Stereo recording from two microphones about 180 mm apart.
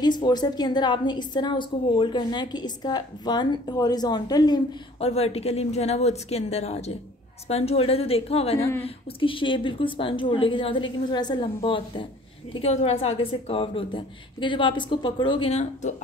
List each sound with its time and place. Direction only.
0.0 s a woman's voice: 25° left (ahead or behind)
5.0 s speech: 35° left (ahead or behind)
8.5 s a woman's voice: 15° left (ahead or behind)
8.8 s a woman's voice: 30° left (ahead or behind)